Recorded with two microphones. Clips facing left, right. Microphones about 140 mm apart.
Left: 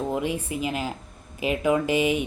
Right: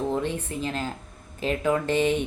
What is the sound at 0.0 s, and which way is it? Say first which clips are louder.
A woman's voice: even; 10° left (ahead or behind).